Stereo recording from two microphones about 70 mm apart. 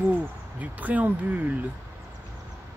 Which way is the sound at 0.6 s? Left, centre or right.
Right.